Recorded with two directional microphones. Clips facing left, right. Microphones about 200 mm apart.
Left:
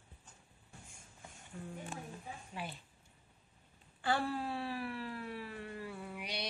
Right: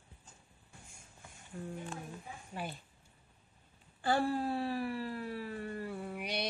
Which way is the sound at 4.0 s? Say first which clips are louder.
Right 4 dB; 45° right (ahead or behind).